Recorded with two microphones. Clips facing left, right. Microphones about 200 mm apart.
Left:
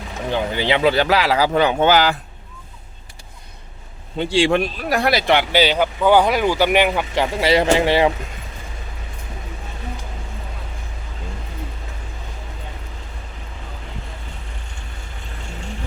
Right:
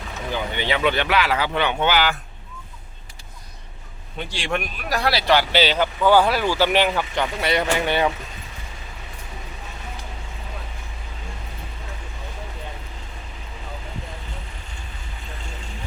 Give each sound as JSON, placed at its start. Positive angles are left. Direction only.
{"t": 0.3, "sound": "speech", "side_deg": 30}
{"t": 4.2, "sound": "speech", "side_deg": 30}
{"t": 7.2, "sound": "speech", "side_deg": 25}